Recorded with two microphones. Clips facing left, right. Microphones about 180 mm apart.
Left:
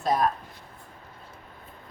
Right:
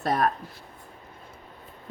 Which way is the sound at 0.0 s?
60° right (ahead or behind).